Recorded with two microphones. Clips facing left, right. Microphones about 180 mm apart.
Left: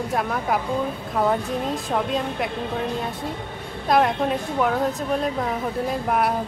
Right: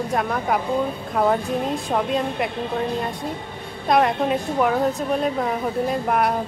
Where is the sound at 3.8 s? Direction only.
Centre (ahead or behind).